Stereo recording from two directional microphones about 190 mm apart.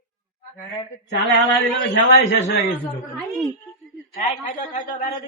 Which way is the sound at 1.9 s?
70° left (ahead or behind).